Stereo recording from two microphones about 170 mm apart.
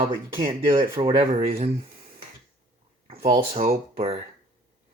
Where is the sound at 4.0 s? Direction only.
35° right (ahead or behind).